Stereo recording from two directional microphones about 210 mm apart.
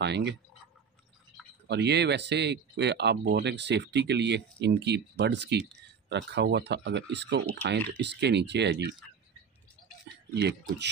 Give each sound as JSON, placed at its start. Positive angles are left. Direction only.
{"t": 0.0, "sound": "speech", "side_deg": -55}
{"t": 1.7, "sound": "speech", "side_deg": -55}